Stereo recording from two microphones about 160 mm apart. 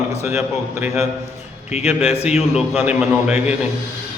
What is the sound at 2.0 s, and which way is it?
Speech, 40° left (ahead or behind).